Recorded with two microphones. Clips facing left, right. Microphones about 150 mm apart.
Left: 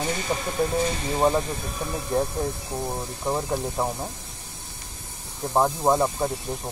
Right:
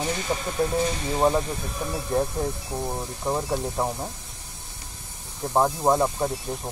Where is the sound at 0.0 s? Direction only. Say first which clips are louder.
Even; centre (ahead or behind).